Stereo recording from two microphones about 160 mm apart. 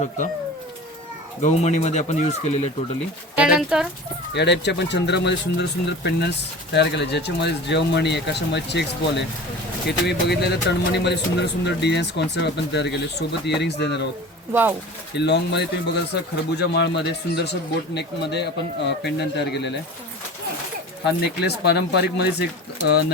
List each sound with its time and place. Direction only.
1.4 s speech: 45° left (ahead or behind)
3.3 s speech: 5° right (ahead or behind)
4.4 s speech: 90° left
14.5 s speech: 15° right (ahead or behind)
15.1 s speech: 90° left
21.0 s speech: 90° left